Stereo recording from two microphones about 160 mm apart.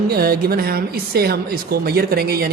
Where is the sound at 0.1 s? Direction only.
75° right (ahead or behind).